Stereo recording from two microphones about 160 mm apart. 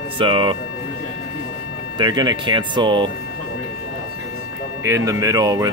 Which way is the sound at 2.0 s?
30° right (ahead or behind).